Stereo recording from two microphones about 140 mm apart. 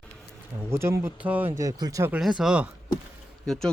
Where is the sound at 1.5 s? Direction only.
25° right (ahead or behind).